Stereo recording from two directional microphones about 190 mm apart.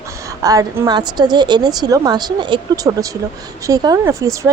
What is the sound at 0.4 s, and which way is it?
Speech, 20° right (ahead or behind).